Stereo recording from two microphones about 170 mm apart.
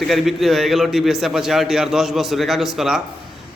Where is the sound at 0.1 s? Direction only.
Centre (ahead or behind).